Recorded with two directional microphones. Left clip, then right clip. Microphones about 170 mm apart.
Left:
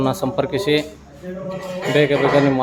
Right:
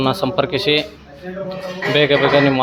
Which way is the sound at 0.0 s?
15° left (ahead or behind).